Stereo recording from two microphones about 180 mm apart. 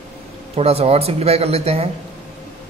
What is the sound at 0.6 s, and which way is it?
Speech, 35° right (ahead or behind).